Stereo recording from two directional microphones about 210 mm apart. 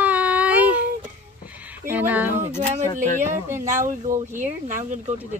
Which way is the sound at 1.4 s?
5° right (ahead or behind).